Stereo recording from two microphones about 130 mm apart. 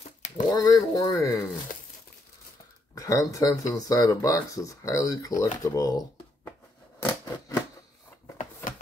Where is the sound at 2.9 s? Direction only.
25° left (ahead or behind).